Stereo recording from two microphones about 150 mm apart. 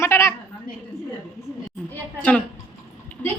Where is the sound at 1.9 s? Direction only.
5° left (ahead or behind).